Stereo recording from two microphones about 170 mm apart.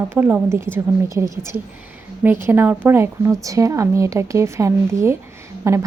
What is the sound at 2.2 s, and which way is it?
Speech, 10° right (ahead or behind).